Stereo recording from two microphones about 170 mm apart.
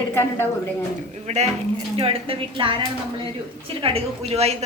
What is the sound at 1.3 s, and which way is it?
A woman's voice, 40° right (ahead or behind).